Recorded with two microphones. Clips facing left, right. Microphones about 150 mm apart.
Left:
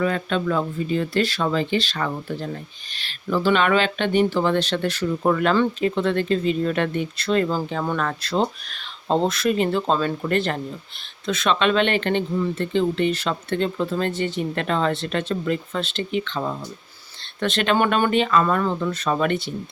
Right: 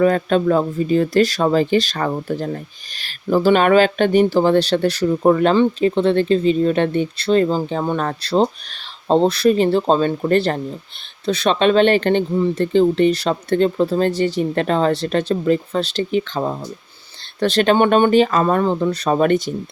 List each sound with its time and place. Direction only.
0.0 s speech: 40° right (ahead or behind)